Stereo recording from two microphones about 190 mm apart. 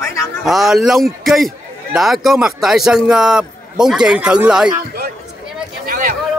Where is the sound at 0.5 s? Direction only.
Centre (ahead or behind).